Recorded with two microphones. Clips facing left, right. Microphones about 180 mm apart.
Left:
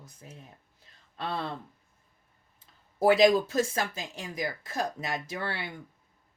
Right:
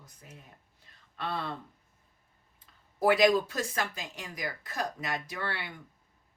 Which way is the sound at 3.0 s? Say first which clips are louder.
Left 3 dB; 25° left (ahead or behind).